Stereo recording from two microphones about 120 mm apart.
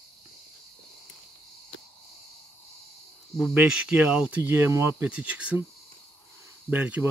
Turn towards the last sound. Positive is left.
turn(degrees=-10)  # may be behind; listen again after turning